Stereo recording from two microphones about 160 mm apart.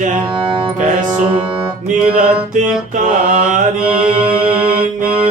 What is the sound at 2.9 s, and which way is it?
Mantra, 55° right (ahead or behind).